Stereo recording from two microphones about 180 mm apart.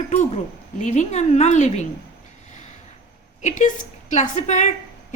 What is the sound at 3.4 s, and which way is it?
A woman's voice, 45° left (ahead or behind).